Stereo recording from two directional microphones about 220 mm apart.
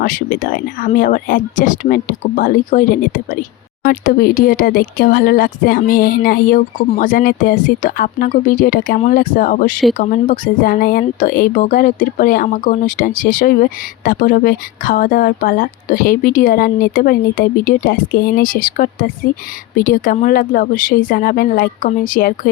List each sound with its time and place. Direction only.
0.0 s speech: 40° left (ahead or behind)